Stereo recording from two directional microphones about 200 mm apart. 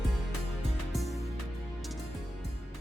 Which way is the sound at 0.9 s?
Centre (ahead or behind).